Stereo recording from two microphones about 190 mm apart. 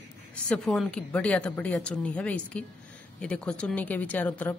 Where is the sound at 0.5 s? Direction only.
5° left (ahead or behind).